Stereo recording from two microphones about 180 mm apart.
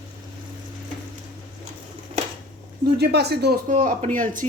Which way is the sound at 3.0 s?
65° right (ahead or behind).